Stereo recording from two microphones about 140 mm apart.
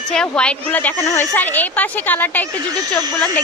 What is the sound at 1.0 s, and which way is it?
Speech, 25° left (ahead or behind).